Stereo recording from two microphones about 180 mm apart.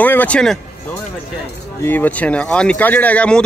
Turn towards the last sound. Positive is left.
turn(degrees=5)  # may be behind; listen again after turning